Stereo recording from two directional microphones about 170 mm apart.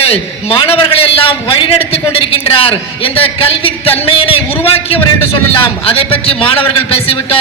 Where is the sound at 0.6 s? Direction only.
35° left (ahead or behind).